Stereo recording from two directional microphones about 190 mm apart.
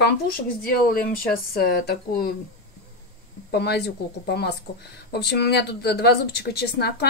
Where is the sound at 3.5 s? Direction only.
60° left (ahead or behind).